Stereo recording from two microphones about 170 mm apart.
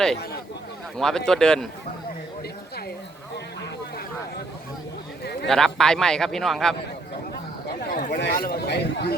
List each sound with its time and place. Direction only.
0.9 s a man's voice: 5° left (ahead or behind)
5.2 s a sound: 75° left (ahead or behind)
5.5 s a man's voice: centre (ahead or behind)
7.9 s speech: 60° left (ahead or behind)